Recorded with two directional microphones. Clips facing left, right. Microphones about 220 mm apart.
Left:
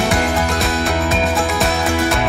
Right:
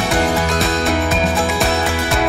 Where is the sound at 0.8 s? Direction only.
Centre (ahead or behind).